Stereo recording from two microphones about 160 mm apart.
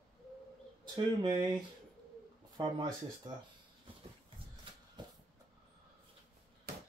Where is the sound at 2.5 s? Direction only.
30° right (ahead or behind).